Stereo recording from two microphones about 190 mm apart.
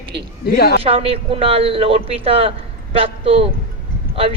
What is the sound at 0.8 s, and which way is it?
A woman's voice, 30° right (ahead or behind).